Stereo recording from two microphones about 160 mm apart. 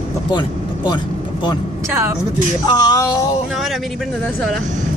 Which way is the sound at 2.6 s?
25° left (ahead or behind).